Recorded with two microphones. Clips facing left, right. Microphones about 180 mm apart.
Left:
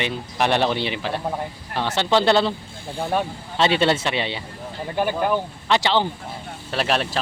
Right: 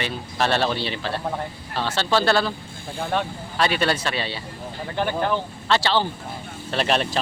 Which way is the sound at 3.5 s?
25° left (ahead or behind).